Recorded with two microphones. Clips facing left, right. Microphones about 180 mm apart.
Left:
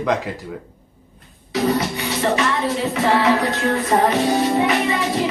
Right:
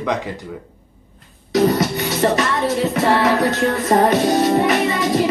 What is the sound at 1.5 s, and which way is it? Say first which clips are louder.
Music: right 4 dB; 40° right (ahead or behind).